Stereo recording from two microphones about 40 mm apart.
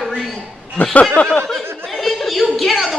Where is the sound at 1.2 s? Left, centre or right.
Left.